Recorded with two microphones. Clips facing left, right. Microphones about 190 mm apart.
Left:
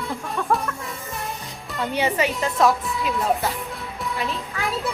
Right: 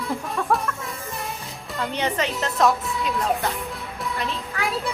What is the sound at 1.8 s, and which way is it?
Speech, 10° left (ahead or behind).